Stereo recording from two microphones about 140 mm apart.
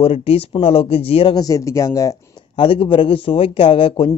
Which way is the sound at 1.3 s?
25° left (ahead or behind).